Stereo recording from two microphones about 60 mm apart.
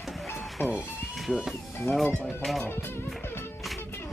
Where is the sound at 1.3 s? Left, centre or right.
Centre.